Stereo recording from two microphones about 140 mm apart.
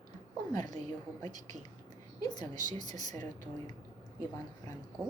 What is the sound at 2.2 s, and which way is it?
A woman's voice, 30° left (ahead or behind).